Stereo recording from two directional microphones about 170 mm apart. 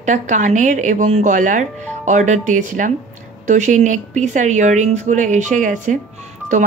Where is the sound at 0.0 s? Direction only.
45° right (ahead or behind).